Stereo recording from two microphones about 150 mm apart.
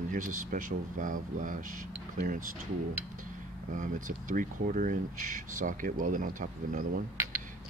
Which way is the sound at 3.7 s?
60° right (ahead or behind).